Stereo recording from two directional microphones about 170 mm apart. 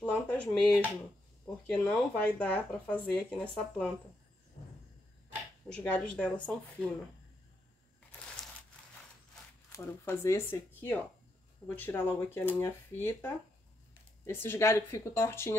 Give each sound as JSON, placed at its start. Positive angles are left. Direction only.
{"t": 0.0, "sound": "speech", "side_deg": 10}
{"t": 5.8, "sound": "speech", "side_deg": 10}
{"t": 9.7, "sound": "speech", "side_deg": 15}